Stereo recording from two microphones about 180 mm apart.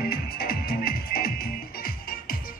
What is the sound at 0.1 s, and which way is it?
Music, 60° left (ahead or behind).